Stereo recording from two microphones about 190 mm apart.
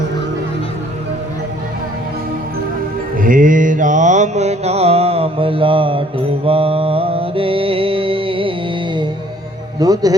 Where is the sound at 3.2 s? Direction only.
45° right (ahead or behind); by 8.5 s 30° right (ahead or behind).